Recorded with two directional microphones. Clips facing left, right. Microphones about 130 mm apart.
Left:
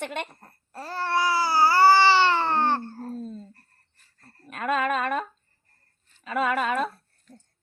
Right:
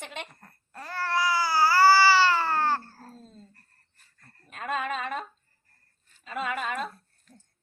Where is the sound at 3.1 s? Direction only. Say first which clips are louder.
Left 14 dB; 55° left (ahead or behind).